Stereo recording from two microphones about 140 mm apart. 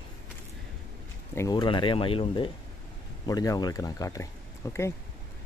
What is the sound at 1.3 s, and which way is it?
Speech, 20° left (ahead or behind).